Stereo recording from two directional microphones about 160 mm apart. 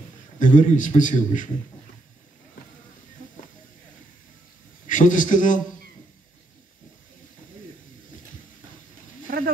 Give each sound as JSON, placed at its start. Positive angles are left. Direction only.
{"t": 0.4, "sound": "a man's voice", "side_deg": 50}
{"t": 4.8, "sound": "a man's voice", "side_deg": 55}
{"t": 9.3, "sound": "wild animals", "side_deg": -65}